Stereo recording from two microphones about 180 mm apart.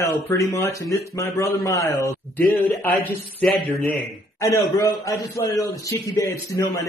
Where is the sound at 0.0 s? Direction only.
15° left (ahead or behind).